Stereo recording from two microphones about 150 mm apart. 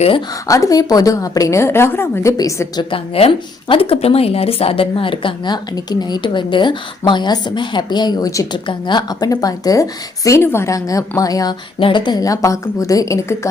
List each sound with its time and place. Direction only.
0.4 s a woman's voice: 20° left (ahead or behind)
3.2 s a woman's voice: 40° left (ahead or behind); by 13.5 s 20° left (ahead or behind)